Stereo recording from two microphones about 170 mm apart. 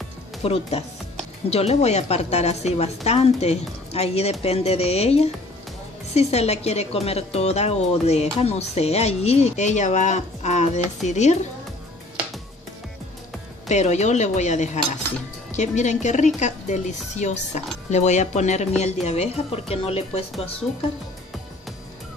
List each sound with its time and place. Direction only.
0.4 s a woman's voice: 35° left (ahead or behind)
13.7 s a woman's voice: 40° left (ahead or behind)